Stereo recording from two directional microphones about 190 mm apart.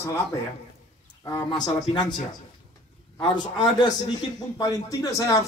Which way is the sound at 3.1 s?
25° left (ahead or behind).